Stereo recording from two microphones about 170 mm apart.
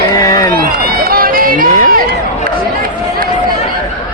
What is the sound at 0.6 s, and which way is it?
Run, 60° right (ahead or behind).